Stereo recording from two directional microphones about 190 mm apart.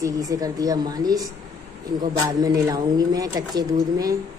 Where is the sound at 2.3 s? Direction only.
20° right (ahead or behind).